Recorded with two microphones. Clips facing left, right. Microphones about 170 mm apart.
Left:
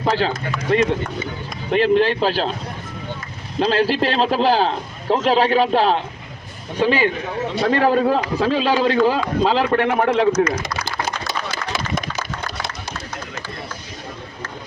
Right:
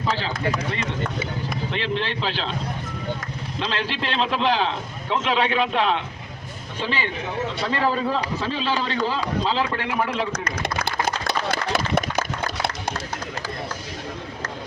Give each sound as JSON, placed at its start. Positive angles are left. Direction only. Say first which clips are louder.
{"t": 0.0, "sound": "speech", "louder": "left 6 dB", "side_deg": 55}
{"t": 1.7, "sound": "speech", "louder": "left 13 dB", "side_deg": 45}
{"t": 3.6, "sound": "a man's voice", "louder": "left 10 dB", "side_deg": 40}
{"t": 6.7, "sound": "speech", "louder": "left 9 dB", "side_deg": 45}
{"t": 10.6, "sound": "a sound", "louder": "right 1 dB", "side_deg": -60}